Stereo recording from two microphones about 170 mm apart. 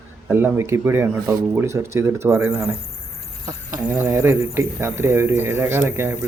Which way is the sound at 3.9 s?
15° right (ahead or behind).